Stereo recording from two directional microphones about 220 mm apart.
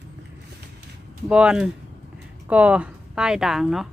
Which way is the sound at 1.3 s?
5° right (ahead or behind).